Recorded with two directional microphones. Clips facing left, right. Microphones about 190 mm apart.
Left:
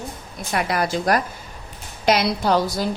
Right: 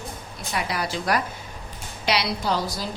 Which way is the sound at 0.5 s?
50° left (ahead or behind).